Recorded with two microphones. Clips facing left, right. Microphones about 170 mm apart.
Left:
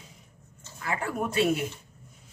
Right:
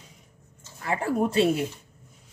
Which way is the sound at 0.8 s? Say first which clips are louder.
Right 5 dB; 30° right (ahead or behind).